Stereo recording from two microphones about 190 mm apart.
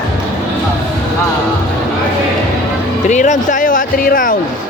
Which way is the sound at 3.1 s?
40° left (ahead or behind).